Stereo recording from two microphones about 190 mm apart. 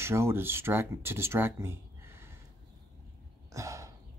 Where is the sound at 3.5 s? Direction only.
15° right (ahead or behind).